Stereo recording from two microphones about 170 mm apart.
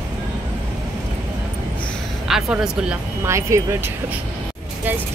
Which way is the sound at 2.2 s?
5° right (ahead or behind).